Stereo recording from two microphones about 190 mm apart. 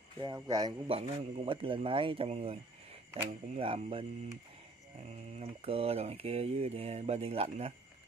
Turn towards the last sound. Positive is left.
turn(degrees=-30)  # may be behind; listen again after turning